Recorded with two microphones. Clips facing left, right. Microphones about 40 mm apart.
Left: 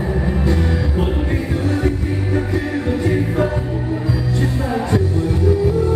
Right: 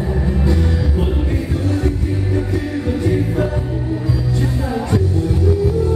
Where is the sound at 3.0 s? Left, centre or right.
Centre.